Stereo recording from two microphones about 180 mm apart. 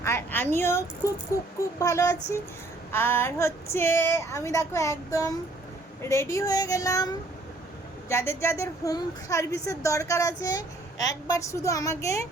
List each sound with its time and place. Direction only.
0.0 s a woman's voice: 15° left (ahead or behind)
8.1 s a woman's voice: 15° left (ahead or behind)